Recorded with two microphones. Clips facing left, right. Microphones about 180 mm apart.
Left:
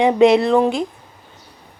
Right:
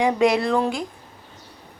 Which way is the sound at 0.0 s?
25° left (ahead or behind).